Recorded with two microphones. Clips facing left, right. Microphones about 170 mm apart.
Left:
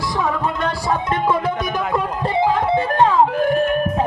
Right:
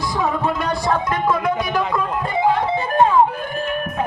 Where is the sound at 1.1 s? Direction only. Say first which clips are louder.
Even; 30° left (ahead or behind).